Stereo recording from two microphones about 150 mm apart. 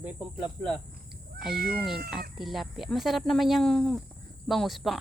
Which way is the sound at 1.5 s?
90° right.